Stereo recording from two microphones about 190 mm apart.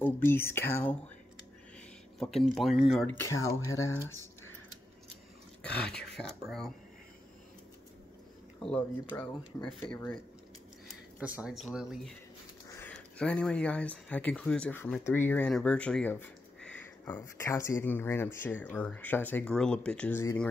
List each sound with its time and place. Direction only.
0.0 s speech: 10° left (ahead or behind)
2.1 s speech: centre (ahead or behind)
3.2 s speech: 15° left (ahead or behind)
5.6 s a sound: 5° left (ahead or behind)
9.1 s speech: 15° left (ahead or behind)
11.1 s speech: 10° right (ahead or behind)
12.6 s speech: 10° left (ahead or behind)